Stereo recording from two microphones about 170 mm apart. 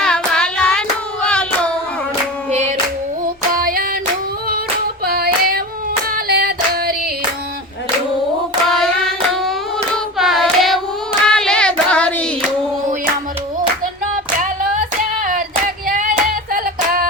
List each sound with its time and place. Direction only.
0.0 s hands: 5° left (ahead or behind)
2.5 s singing: 40° right (ahead or behind)
3.5 s music: 55° right (ahead or behind)
5.0 s hands: 65° right (ahead or behind)
6.1 s female singing: 65° right (ahead or behind)
8.7 s hands: centre (ahead or behind)
14.4 s music: 50° right (ahead or behind)
16.0 s hands: 55° right (ahead or behind)